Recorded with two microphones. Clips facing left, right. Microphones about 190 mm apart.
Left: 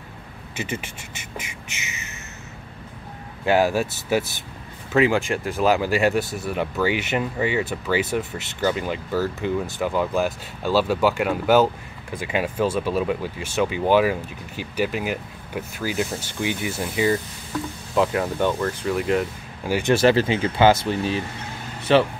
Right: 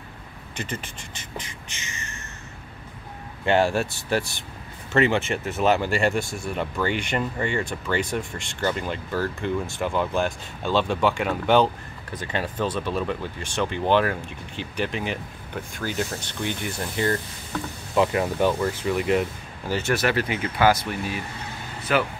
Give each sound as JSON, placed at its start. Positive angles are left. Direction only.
{"t": 0.6, "sound": "speech", "side_deg": 10}
{"t": 3.4, "sound": "speech", "side_deg": 5}
{"t": 19.9, "sound": "speech", "side_deg": 30}